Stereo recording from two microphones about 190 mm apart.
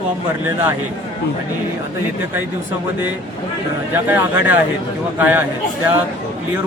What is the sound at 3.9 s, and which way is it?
Speech, 10° right (ahead or behind).